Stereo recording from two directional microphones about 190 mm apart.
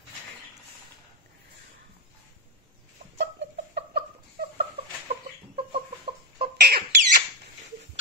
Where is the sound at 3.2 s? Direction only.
60° right (ahead or behind).